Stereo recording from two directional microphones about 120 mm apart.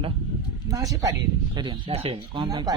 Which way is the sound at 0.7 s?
30° right (ahead or behind).